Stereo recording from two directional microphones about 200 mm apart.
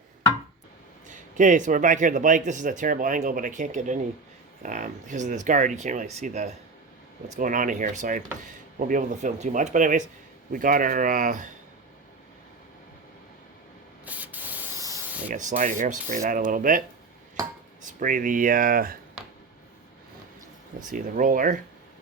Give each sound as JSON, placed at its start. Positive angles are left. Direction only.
{"t": 1.0, "sound": "speech", "side_deg": -40}
{"t": 14.0, "sound": "spray", "side_deg": -10}
{"t": 15.3, "sound": "speech", "side_deg": -40}
{"t": 18.0, "sound": "speech", "side_deg": -40}
{"t": 19.2, "sound": "a sound", "side_deg": 0}
{"t": 20.9, "sound": "speech", "side_deg": -40}